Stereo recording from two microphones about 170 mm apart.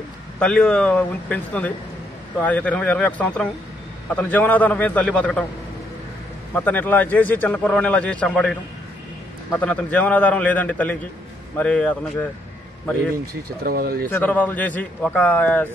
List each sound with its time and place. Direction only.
0.4 s a man's voice: 5° left (ahead or behind)
6.5 s a man's voice: 10° left (ahead or behind)
13.3 s speech: 60° right (ahead or behind)
14.1 s a man's voice: 10° left (ahead or behind)